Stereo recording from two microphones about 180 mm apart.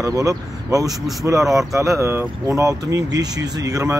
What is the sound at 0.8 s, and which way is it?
Speech, centre (ahead or behind).